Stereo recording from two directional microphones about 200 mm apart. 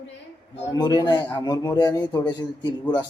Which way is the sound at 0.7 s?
20° left (ahead or behind).